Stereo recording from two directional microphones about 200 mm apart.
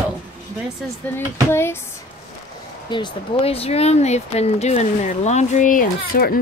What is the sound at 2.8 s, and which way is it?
Speech, 25° left (ahead or behind).